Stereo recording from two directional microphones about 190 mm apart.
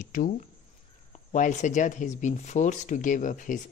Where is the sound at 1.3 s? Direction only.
40° left (ahead or behind).